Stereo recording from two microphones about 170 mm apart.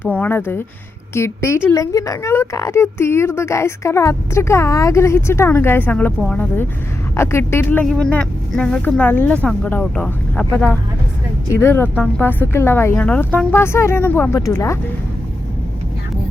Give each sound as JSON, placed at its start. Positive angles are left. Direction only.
{"t": 0.0, "sound": "a woman's voice", "side_deg": 10}